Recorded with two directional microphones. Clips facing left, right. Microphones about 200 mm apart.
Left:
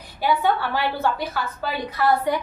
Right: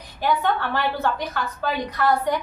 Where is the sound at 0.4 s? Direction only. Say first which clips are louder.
Left 1 dB; 10° left (ahead or behind).